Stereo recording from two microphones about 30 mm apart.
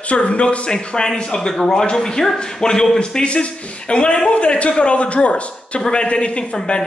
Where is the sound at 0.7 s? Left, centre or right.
Left.